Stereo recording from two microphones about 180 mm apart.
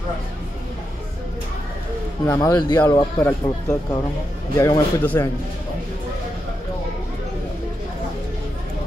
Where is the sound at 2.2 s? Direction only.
20° left (ahead or behind).